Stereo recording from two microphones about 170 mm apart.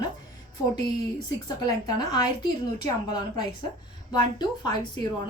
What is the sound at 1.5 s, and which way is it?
A woman's voice, 20° left (ahead or behind).